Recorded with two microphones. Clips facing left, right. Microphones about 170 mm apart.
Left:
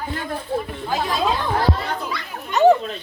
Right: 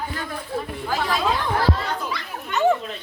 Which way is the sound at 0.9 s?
20° left (ahead or behind).